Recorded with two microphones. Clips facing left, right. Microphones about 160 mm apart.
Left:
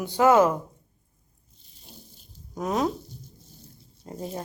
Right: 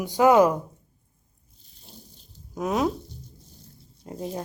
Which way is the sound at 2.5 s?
5° right (ahead or behind).